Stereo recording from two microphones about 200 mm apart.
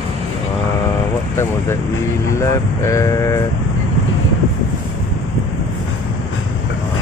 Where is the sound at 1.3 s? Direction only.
15° left (ahead or behind).